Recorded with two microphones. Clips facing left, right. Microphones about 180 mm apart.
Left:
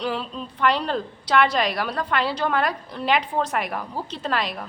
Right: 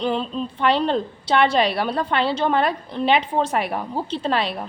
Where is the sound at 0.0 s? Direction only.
25° right (ahead or behind).